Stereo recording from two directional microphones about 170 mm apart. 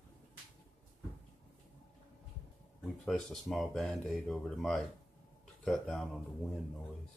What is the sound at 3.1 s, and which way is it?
Speech, centre (ahead or behind).